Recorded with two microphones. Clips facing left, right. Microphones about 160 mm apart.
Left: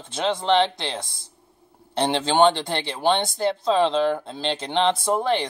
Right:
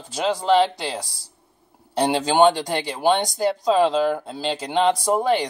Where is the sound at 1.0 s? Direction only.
35° right (ahead or behind).